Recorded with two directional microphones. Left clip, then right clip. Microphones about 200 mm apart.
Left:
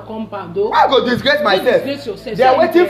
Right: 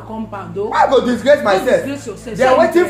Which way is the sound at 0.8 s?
25° left (ahead or behind).